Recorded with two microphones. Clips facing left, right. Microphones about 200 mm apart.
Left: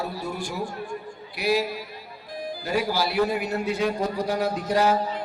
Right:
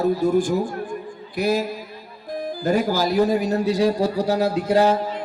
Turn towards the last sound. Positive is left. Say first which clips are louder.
# right 5 dB
turn(degrees=-25)  # may be behind; listen again after turning